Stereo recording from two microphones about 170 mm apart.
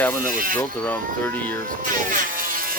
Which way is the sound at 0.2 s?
55° right (ahead or behind).